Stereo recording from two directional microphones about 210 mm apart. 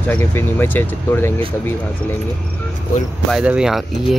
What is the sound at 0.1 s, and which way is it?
Speech, 10° left (ahead or behind).